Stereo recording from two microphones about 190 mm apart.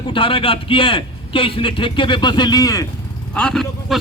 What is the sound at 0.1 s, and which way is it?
A man's voice, 25° left (ahead or behind).